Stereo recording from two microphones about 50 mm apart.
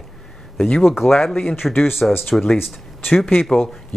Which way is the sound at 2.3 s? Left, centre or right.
Centre.